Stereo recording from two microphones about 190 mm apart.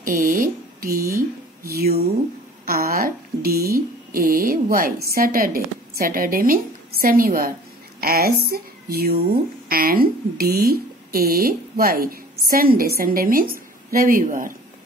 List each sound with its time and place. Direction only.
0.0 s speech: 45° right (ahead or behind)
1.0 s speech: 15° right (ahead or behind)
2.6 s a woman's voice: 50° right (ahead or behind)
3.7 s a sound: 50° right (ahead or behind)
5.1 s speech: 50° right (ahead or behind)